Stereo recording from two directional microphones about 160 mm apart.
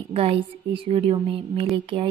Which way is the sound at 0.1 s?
35° right (ahead or behind).